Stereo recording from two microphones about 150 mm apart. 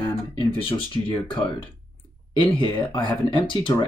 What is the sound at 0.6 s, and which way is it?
Speech, 35° left (ahead or behind).